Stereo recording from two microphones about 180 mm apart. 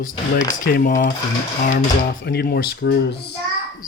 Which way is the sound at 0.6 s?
50° left (ahead or behind).